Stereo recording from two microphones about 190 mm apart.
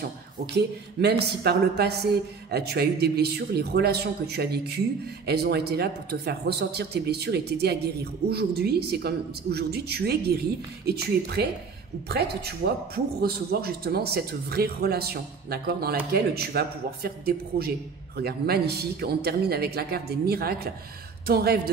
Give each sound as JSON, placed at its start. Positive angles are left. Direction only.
{"t": 0.6, "sound": "a man's voice", "side_deg": -60}